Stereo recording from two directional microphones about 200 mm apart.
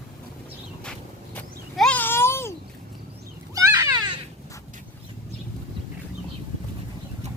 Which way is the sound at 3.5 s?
15° right (ahead or behind).